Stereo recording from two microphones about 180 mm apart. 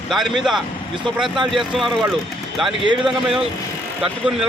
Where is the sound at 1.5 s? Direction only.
Centre (ahead or behind).